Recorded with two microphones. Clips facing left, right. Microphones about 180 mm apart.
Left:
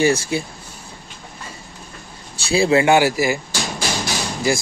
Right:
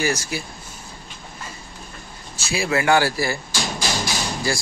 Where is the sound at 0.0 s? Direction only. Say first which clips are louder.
Left 6 dB; 30° left (ahead or behind).